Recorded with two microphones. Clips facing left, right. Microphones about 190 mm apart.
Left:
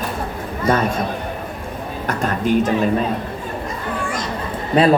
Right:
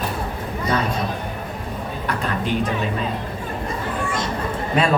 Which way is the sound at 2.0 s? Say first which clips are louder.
Left 5 dB; 45° left (ahead or behind).